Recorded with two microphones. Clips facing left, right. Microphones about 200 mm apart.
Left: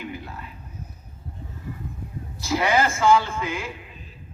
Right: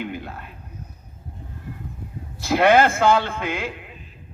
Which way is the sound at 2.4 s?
60° right (ahead or behind).